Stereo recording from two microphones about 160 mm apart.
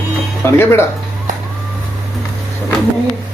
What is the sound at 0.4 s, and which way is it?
Speech, 15° left (ahead or behind).